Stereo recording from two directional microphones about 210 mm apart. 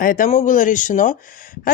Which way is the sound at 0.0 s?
40° left (ahead or behind).